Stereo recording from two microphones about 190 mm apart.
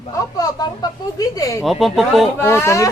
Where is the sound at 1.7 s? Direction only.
Centre (ahead or behind).